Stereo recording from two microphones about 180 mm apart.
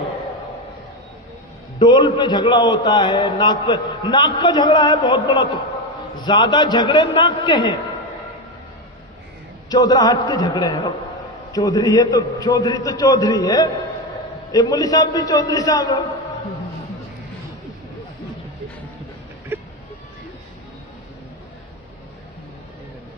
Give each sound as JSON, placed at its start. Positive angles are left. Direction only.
{"t": 1.8, "sound": "a man's voice", "side_deg": 25}
{"t": 9.6, "sound": "a man's voice", "side_deg": 20}
{"t": 19.5, "sound": "vehicle", "side_deg": -10}